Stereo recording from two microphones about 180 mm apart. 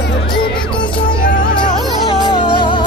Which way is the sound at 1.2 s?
50° left (ahead or behind).